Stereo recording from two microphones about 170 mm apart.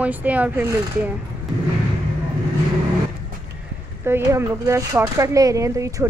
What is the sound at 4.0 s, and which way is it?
Speech, 15° right (ahead or behind).